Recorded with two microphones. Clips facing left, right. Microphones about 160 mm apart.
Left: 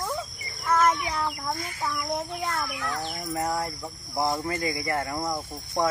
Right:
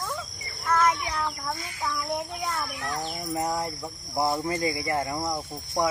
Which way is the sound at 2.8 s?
20° right (ahead or behind).